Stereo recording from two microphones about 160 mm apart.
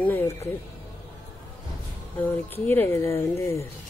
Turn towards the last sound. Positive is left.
turn(degrees=20)  # may be behind; listen again after turning